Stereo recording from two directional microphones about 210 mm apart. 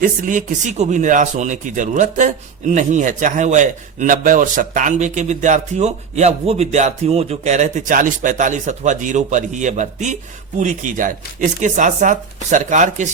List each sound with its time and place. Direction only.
0.0 s a man's voice: 40° right (ahead or behind)